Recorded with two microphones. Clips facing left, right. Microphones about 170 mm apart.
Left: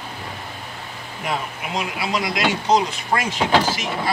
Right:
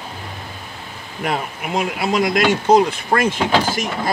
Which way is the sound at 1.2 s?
55° right (ahead or behind).